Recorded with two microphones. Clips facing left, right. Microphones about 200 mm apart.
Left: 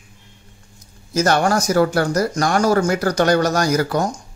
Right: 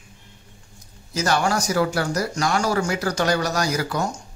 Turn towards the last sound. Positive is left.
turn(degrees=50)  # may be behind; listen again after turning